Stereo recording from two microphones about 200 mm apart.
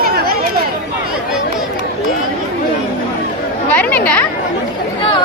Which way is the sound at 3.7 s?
5° left (ahead or behind).